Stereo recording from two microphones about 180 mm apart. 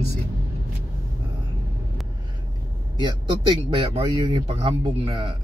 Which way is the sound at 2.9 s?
25° right (ahead or behind).